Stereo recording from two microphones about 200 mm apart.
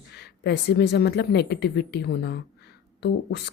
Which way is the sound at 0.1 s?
55° left (ahead or behind).